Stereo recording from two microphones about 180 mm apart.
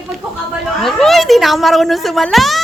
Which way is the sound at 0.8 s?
Centre (ahead or behind).